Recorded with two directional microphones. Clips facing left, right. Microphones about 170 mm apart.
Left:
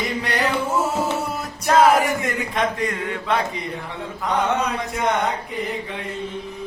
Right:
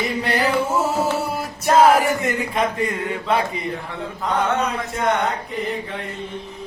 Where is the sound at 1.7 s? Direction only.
5° right (ahead or behind).